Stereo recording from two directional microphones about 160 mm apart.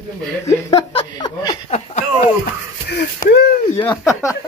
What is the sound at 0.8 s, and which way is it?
Speech, 40° left (ahead or behind).